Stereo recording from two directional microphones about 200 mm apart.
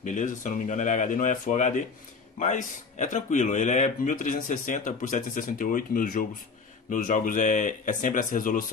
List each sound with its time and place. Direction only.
0.0 s speech: 40° left (ahead or behind)